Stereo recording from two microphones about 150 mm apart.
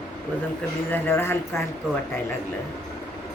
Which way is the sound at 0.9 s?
15° left (ahead or behind).